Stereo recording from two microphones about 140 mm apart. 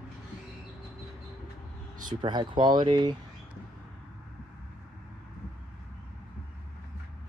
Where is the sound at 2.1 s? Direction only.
30° right (ahead or behind).